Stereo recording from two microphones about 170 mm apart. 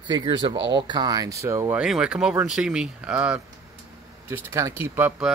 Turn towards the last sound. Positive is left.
turn(degrees=-10)  # may be behind; listen again after turning